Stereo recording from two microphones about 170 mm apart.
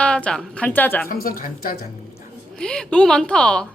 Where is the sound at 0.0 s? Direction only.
5° left (ahead or behind).